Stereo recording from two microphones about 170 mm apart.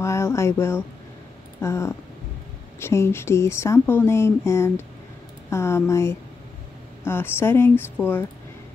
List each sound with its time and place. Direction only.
0.0 s speech: 15° left (ahead or behind)